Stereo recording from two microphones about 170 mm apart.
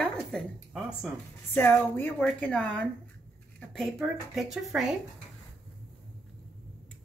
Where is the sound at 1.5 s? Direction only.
15° left (ahead or behind); by 5.0 s centre (ahead or behind).